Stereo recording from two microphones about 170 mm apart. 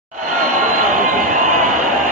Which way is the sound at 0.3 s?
50° right (ahead or behind).